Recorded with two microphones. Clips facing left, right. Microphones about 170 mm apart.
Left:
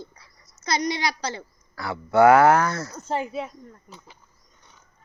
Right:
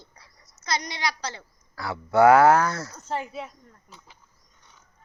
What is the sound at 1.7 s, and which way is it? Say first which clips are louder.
Speech: left 2 dB; 10° right (ahead or behind).